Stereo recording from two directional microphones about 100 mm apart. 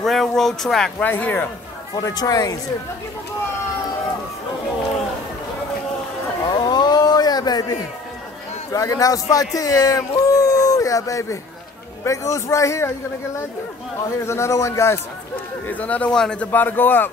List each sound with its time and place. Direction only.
0.0 s speech: centre (ahead or behind)
1.0 s a man's voice: 20° left (ahead or behind)
2.0 s a man's voice: 40° left (ahead or behind)
6.5 s a sound: 45° left (ahead or behind)
8.7 s a man's voice: 35° left (ahead or behind)
14.2 s a man's voice: 30° left (ahead or behind)
15.7 s a man's voice: 15° left (ahead or behind)